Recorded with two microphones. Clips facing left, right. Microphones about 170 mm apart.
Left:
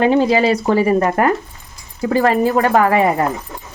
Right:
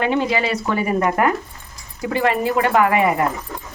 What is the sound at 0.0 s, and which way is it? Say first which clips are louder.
Speech: left 6 dB; 35° left (ahead or behind).